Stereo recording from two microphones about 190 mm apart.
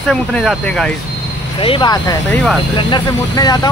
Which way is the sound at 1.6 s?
25° left (ahead or behind).